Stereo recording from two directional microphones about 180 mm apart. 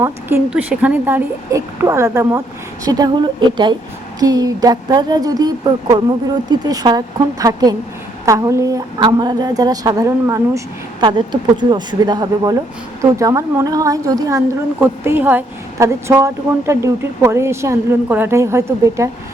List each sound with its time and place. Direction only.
0.0 s speech: 15° right (ahead or behind)